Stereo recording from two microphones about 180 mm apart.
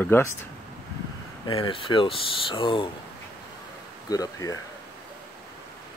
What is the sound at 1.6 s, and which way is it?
Speech, 30° left (ahead or behind).